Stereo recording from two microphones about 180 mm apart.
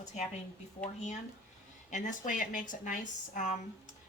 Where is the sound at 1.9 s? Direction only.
45° left (ahead or behind).